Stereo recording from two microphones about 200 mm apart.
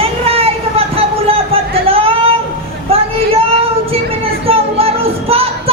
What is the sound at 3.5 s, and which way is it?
Child singing, 30° right (ahead or behind).